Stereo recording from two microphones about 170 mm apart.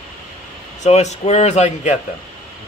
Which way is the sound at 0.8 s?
40° left (ahead or behind).